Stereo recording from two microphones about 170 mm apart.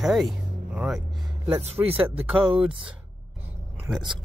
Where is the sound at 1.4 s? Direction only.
35° right (ahead or behind).